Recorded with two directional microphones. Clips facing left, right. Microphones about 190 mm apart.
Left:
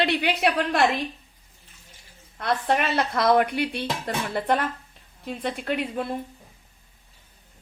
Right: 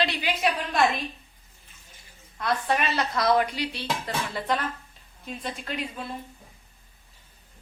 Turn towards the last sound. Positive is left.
turn(degrees=60)  # may be behind; listen again after turning